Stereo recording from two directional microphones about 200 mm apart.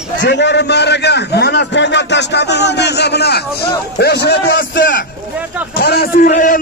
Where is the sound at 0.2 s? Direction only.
60° left (ahead or behind).